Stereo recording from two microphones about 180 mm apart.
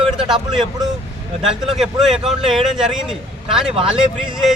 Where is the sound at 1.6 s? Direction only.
Centre (ahead or behind).